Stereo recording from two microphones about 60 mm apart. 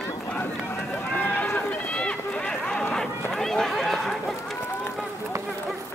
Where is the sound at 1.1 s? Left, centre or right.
Left; by 3.1 s centre.